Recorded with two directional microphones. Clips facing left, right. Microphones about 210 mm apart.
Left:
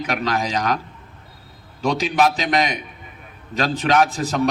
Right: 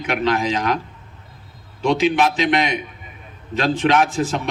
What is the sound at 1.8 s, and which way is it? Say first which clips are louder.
A man's voice: right 2 dB; 40° left (ahead or behind).